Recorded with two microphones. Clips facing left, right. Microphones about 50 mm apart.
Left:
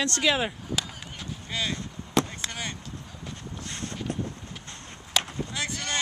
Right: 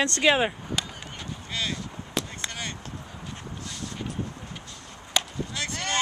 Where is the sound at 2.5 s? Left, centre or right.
Centre.